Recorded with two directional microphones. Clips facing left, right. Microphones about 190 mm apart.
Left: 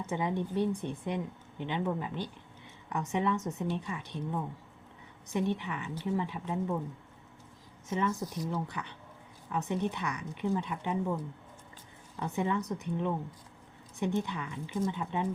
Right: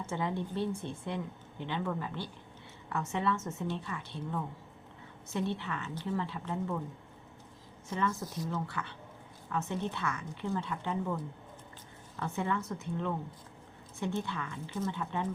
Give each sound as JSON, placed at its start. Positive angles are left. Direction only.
{"t": 0.0, "sound": "a woman's voice", "side_deg": 15}
{"t": 7.9, "sound": "a woman's voice", "side_deg": 20}